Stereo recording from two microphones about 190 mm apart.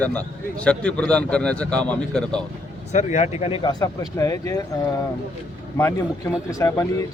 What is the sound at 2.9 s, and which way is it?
Speech, 40° left (ahead or behind).